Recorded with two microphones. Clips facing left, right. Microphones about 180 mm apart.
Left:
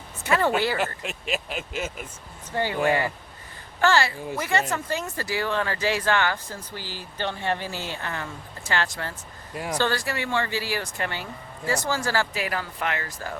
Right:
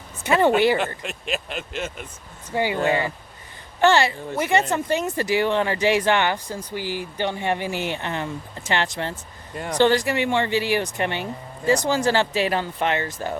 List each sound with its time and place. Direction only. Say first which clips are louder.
0.2 s speech: right 5 dB; 20° right (ahead or behind)
1.0 s speech: right 1 dB; 5° left (ahead or behind)
2.5 s speech: right 2 dB; 15° right (ahead or behind)